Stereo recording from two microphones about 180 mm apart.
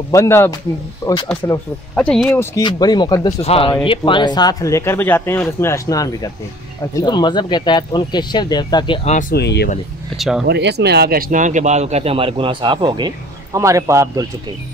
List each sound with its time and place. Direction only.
0.1 s speech: 15° left (ahead or behind)
2.0 s speech: 5° left (ahead or behind)
2.5 s speech: 20° left (ahead or behind)
3.4 s speech: 30° left (ahead or behind)
9.3 s speech: 65° left (ahead or behind)
10.1 s speech: centre (ahead or behind)
10.4 s speech: 65° right (ahead or behind); by 14.2 s 15° right (ahead or behind)